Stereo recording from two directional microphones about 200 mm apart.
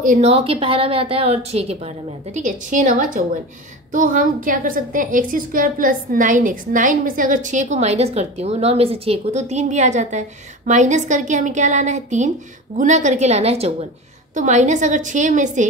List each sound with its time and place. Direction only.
0.0 s a woman's voice: 35° right (ahead or behind)